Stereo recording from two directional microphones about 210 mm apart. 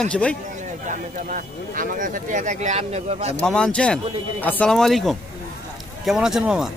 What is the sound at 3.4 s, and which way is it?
Speech, 5° left (ahead or behind).